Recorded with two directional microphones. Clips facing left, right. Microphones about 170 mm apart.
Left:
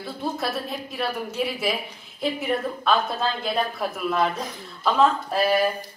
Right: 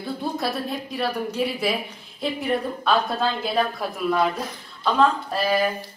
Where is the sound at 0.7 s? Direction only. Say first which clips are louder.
Right 2 dB; centre (ahead or behind).